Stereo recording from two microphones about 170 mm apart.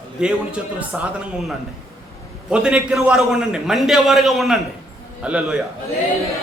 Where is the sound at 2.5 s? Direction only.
5° right (ahead or behind).